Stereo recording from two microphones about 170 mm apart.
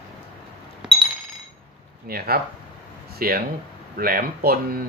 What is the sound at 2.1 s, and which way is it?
Speech, 65° right (ahead or behind).